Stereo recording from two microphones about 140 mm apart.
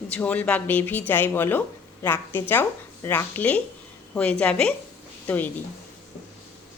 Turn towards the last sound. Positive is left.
turn(degrees=15)  # may be behind; listen again after turning